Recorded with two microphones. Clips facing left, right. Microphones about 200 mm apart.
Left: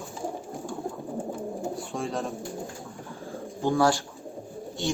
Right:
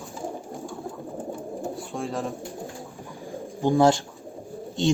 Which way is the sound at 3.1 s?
15° right (ahead or behind).